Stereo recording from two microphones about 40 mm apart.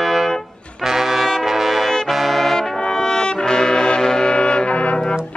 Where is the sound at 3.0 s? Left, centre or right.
Centre.